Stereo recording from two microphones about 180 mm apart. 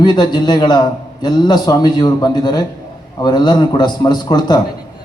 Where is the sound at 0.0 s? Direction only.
25° left (ahead or behind).